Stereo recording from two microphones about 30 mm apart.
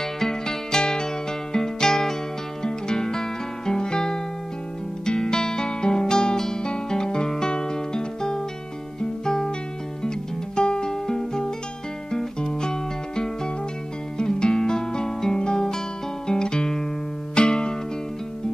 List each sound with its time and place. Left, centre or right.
0.0 s music: centre
5.0 s guitar: left
6.9 s music: left
10.0 s music: left
16.3 s guitar: left
17.4 s music: left